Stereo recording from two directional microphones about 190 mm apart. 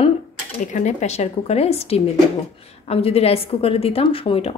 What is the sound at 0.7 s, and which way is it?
A woman's voice, 40° left (ahead or behind).